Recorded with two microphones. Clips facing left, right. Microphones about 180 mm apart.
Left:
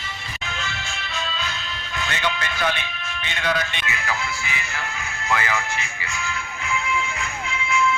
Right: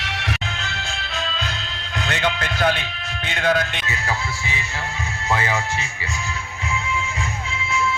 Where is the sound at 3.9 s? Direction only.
30° right (ahead or behind).